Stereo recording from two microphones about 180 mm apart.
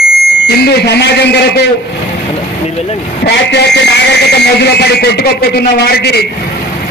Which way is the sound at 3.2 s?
75° left (ahead or behind).